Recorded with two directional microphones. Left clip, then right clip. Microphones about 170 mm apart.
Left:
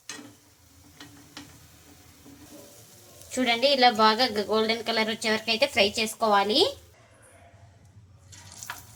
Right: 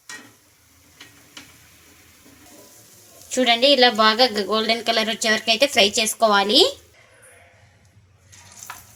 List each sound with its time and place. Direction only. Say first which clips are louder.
3.2 s speech: right 7 dB; 55° right (ahead or behind)